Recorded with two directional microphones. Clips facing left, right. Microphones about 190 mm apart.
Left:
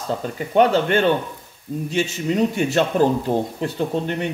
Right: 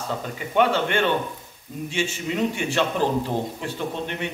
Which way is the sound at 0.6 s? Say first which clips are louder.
Left 4 dB; 40° left (ahead or behind).